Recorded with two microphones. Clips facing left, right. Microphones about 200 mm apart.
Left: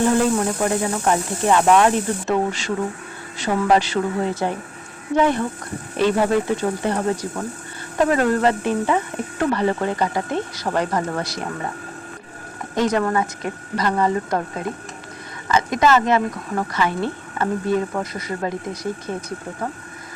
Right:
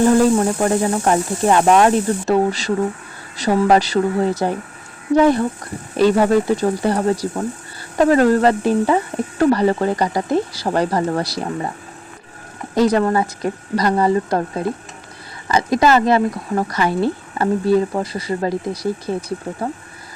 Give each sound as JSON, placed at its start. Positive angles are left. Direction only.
{"t": 0.0, "sound": "speech", "side_deg": -35}
{"t": 12.7, "sound": "speech", "side_deg": -35}